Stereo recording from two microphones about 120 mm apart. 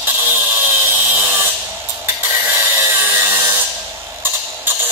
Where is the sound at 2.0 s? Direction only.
20° right (ahead or behind).